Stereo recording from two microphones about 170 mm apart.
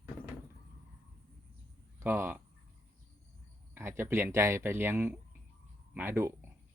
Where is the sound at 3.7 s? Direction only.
15° right (ahead or behind).